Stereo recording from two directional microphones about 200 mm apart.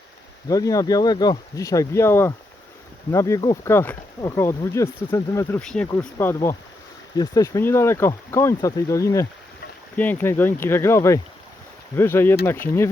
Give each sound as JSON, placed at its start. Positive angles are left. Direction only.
{"t": 0.4, "sound": "speech", "side_deg": 15}